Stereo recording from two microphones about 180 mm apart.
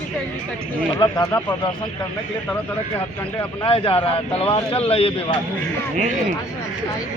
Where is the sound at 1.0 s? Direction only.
20° left (ahead or behind).